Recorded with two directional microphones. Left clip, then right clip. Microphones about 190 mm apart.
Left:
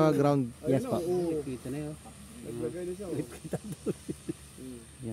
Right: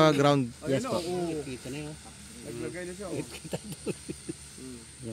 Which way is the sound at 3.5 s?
35° left (ahead or behind).